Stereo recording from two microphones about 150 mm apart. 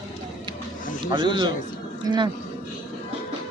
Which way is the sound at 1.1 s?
30° right (ahead or behind).